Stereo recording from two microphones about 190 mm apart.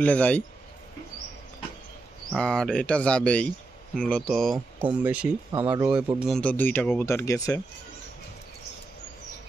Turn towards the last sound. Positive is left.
turn(degrees=15)  # may be behind; listen again after turning